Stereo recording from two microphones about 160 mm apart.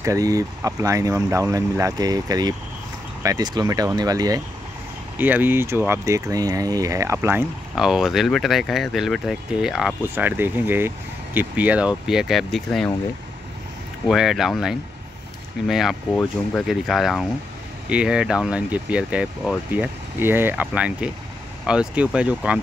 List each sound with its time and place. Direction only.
0.0 s speech: 20° right (ahead or behind)
5.1 s speech: 10° right (ahead or behind)
7.7 s speech: 5° right (ahead or behind)
10.1 s speech: 15° right (ahead or behind)
14.0 s speech: centre (ahead or behind)